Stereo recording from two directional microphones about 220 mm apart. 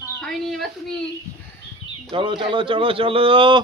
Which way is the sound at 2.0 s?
20° right (ahead or behind).